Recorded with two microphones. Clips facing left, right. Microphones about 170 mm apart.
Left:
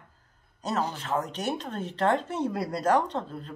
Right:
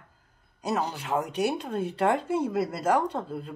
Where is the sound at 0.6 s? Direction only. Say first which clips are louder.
Right 1 dB; 10° right (ahead or behind).